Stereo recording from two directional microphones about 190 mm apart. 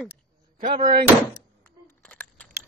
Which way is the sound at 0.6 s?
40° right (ahead or behind).